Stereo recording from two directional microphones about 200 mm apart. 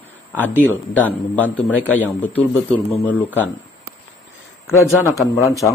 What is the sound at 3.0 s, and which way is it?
Speech, 10° left (ahead or behind).